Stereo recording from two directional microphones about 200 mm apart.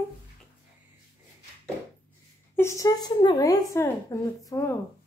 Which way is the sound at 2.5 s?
15° left (ahead or behind).